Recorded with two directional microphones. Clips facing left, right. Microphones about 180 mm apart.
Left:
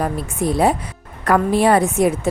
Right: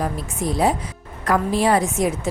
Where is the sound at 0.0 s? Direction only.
60° left (ahead or behind).